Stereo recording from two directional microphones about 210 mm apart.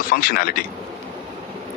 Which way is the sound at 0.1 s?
40° left (ahead or behind).